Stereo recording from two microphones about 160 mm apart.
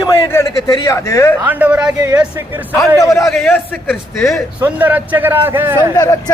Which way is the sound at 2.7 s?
20° left (ahead or behind).